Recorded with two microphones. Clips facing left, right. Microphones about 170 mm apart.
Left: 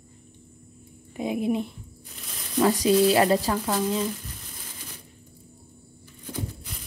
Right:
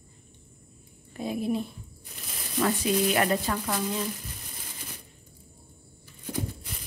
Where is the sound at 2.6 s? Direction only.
35° left (ahead or behind).